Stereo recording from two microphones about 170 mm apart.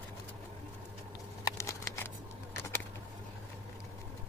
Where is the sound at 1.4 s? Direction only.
15° left (ahead or behind).